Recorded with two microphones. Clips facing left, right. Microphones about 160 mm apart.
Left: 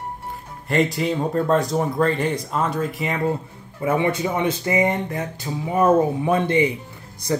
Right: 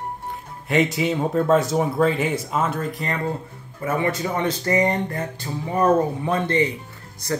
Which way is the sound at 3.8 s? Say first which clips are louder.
Left 3 dB; 15° left (ahead or behind).